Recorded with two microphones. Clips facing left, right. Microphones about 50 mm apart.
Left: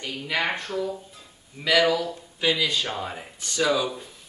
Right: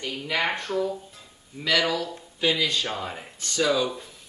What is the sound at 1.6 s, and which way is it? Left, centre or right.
Speech, centre.